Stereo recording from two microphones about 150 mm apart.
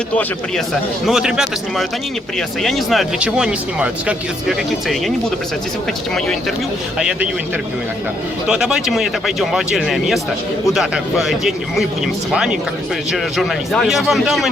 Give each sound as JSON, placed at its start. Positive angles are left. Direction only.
{"t": 1.0, "sound": "speech", "side_deg": -5}
{"t": 7.0, "sound": "speech", "side_deg": -5}
{"t": 8.4, "sound": "speech", "side_deg": -5}